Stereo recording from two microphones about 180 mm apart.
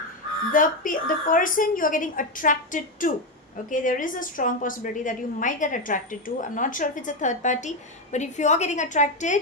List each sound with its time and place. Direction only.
0.5 s a woman's voice: 50° left (ahead or behind)